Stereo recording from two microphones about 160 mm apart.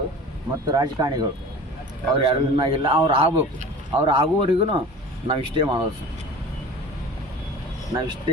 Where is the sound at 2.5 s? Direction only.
30° right (ahead or behind).